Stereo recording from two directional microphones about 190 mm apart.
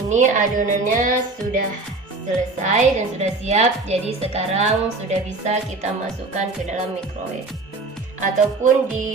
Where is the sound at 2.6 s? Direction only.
35° right (ahead or behind).